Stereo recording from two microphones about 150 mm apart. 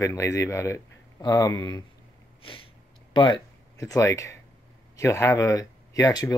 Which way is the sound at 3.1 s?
30° left (ahead or behind).